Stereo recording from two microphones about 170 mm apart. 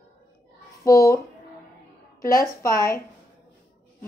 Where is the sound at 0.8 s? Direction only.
20° left (ahead or behind).